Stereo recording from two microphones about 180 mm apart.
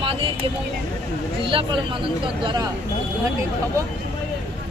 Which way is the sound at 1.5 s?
30° right (ahead or behind).